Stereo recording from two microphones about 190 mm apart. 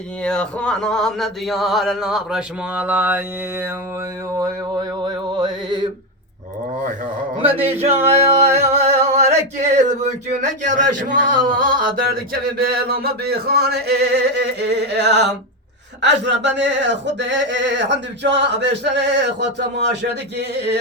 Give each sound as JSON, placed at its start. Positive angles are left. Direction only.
{"t": 0.2, "sound": "a sound", "side_deg": 5}
{"t": 5.0, "sound": "music", "side_deg": -20}
{"t": 8.0, "sound": "music", "side_deg": -35}
{"t": 9.6, "sound": "speech", "side_deg": -35}
{"t": 12.9, "sound": "a sound", "side_deg": -55}
{"t": 16.0, "sound": "speech", "side_deg": -65}